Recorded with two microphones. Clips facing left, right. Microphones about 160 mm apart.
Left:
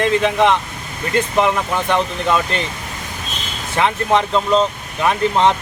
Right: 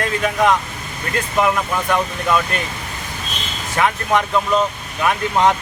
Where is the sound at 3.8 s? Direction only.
25° left (ahead or behind).